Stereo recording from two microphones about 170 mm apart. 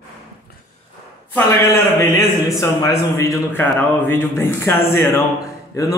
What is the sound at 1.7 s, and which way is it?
A man's voice, 15° left (ahead or behind).